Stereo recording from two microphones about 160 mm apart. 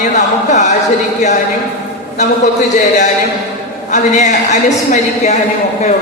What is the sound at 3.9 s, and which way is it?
A woman's voice, 50° left (ahead or behind).